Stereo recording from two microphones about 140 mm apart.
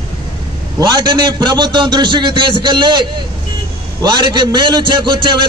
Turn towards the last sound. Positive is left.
turn(degrees=-35)  # may be behind; listen again after turning